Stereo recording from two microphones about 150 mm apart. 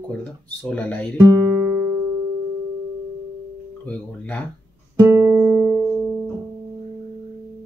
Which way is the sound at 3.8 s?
10° left (ahead or behind).